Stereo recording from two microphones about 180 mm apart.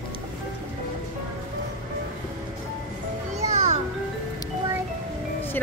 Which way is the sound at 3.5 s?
35° right (ahead or behind).